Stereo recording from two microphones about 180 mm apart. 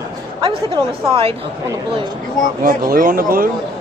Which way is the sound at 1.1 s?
30° right (ahead or behind).